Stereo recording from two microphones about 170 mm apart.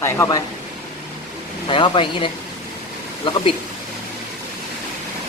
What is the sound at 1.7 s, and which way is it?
Speech, 30° left (ahead or behind).